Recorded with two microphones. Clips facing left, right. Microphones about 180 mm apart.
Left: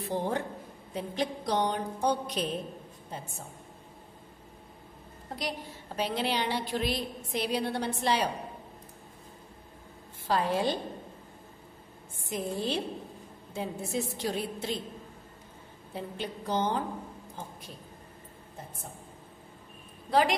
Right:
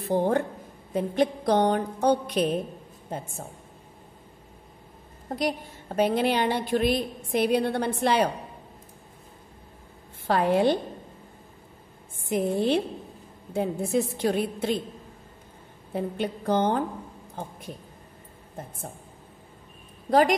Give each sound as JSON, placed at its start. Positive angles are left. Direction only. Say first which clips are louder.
{"t": 0.0, "sound": "a woman's voice", "louder": "right 7 dB", "side_deg": -50}
{"t": 5.3, "sound": "a woman's voice", "louder": "right 8 dB", "side_deg": -50}
{"t": 10.2, "sound": "a woman's voice", "louder": "right 6 dB", "side_deg": -60}
{"t": 12.3, "sound": "a woman's voice", "louder": "right 8 dB", "side_deg": -60}
{"t": 15.9, "sound": "a woman's voice", "louder": "right 8 dB", "side_deg": -55}
{"t": 20.1, "sound": "a woman's voice", "louder": "right 5 dB", "side_deg": -45}